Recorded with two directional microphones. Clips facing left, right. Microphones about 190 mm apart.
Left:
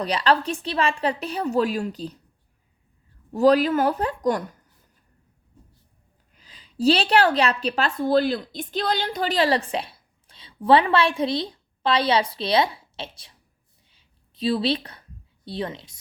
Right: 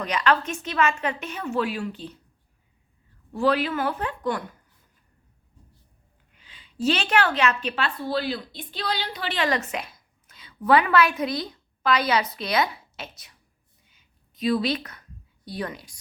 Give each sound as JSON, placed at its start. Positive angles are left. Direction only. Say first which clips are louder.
{"t": 0.0, "sound": "a woman's voice", "louder": "left 2 dB", "side_deg": 35}
{"t": 3.3, "sound": "a woman's voice", "louder": "left 6 dB", "side_deg": 40}
{"t": 6.3, "sound": "a woman's voice", "louder": "left 4 dB", "side_deg": 40}
{"t": 13.9, "sound": "a sound", "louder": "even", "side_deg": 30}
{"t": 15.4, "sound": "speech", "louder": "left 2 dB", "side_deg": 25}